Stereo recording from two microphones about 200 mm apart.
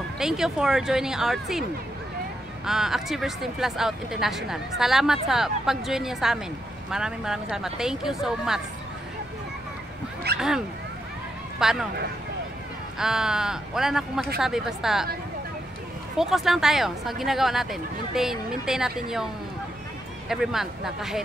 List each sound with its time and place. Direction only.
0.2 s speech: 5° right (ahead or behind)
2.6 s speech: centre (ahead or behind)
10.3 s a sound: 55° right (ahead or behind)
11.6 s speech: centre (ahead or behind)
13.0 s speech: 5° right (ahead or behind)
16.2 s speech: centre (ahead or behind)
20.2 s speech: centre (ahead or behind)